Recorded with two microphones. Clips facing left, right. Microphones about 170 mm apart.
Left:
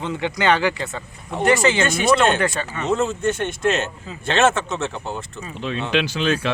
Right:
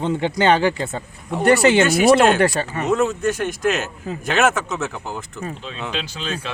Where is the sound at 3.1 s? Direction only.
25° left (ahead or behind).